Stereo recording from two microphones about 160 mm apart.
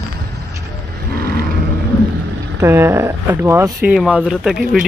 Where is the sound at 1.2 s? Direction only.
75° right (ahead or behind).